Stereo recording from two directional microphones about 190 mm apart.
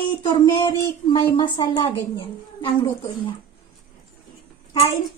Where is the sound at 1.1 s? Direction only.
25° left (ahead or behind).